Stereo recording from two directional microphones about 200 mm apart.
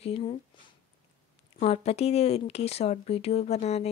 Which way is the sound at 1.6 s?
30° left (ahead or behind).